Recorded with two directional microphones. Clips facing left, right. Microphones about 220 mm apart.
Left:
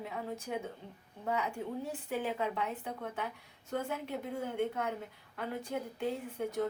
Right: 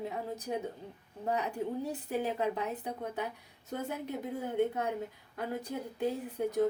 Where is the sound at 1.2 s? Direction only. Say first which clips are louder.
Right 2 dB; 40° right (ahead or behind).